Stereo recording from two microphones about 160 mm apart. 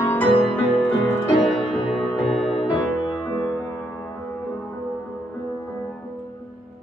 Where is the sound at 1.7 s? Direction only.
35° left (ahead or behind).